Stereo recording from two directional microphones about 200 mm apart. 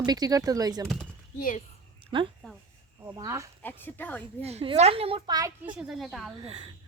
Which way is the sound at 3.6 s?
10° left (ahead or behind).